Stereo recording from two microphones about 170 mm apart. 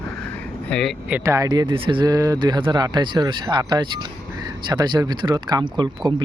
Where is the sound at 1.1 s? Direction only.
15° right (ahead or behind).